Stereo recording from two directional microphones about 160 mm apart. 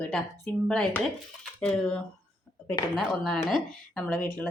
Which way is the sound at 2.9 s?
Centre (ahead or behind).